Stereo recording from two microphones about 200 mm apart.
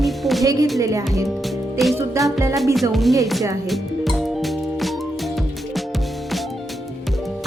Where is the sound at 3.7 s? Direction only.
Centre (ahead or behind).